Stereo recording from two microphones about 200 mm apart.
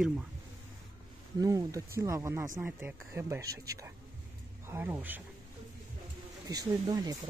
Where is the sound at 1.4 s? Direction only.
15° right (ahead or behind).